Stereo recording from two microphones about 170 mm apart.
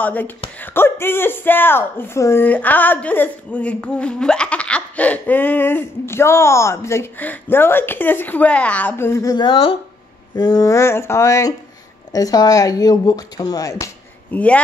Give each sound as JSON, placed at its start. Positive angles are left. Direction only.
{"t": 0.0, "sound": "speech", "side_deg": 10}
{"t": 14.3, "sound": "speech", "side_deg": 10}